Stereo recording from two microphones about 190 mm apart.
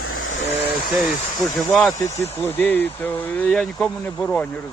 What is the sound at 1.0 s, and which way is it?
Speech, centre (ahead or behind).